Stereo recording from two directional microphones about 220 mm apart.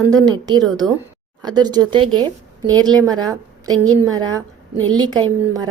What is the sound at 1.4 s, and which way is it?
A woman's voice, 20° right (ahead or behind).